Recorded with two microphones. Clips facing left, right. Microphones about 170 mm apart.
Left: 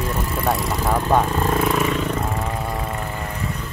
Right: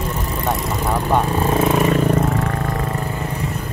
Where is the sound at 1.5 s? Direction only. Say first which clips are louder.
Right 5 dB; 25° right (ahead or behind).